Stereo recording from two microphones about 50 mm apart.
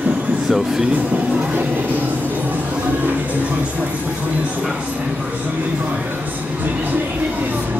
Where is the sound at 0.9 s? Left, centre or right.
Right.